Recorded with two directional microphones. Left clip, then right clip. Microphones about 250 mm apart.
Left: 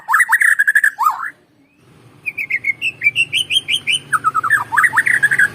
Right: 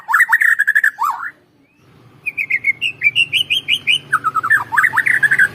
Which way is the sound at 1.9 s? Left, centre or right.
Left.